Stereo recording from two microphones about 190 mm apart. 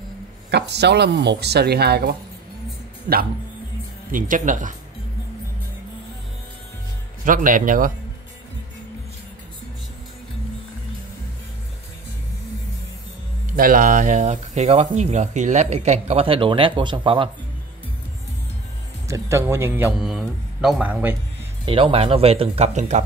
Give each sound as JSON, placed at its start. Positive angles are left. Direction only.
{"t": 0.5, "sound": "speech", "side_deg": -60}
{"t": 4.1, "sound": "speech", "side_deg": -45}
{"t": 7.2, "sound": "speech", "side_deg": -45}
{"t": 13.6, "sound": "speech", "side_deg": -45}
{"t": 19.0, "sound": "a man's voice", "side_deg": -15}
{"t": 21.6, "sound": "speech", "side_deg": -30}